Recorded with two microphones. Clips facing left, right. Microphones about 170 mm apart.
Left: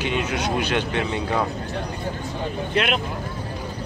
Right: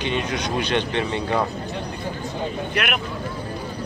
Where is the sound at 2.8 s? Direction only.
25° left (ahead or behind).